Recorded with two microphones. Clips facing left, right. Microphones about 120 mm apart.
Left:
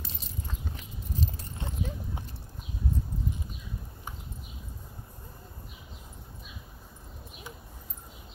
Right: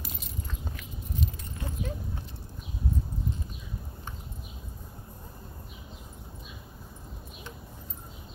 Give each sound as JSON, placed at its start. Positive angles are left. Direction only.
{"t": 0.7, "sound": "clip-clop", "side_deg": 30}